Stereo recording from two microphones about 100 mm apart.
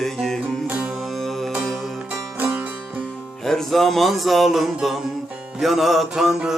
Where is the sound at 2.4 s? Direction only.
15° right (ahead or behind).